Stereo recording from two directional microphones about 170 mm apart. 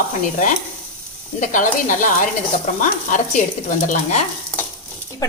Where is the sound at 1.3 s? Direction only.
50° left (ahead or behind).